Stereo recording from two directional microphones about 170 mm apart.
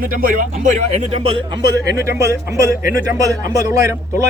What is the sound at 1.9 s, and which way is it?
A man's voice, 15° right (ahead or behind).